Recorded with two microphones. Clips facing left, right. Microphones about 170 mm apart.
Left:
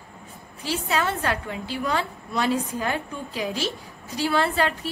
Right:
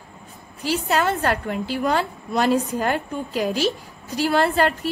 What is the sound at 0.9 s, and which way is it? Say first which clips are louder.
A woman's voice: right 4 dB; 50° right (ahead or behind).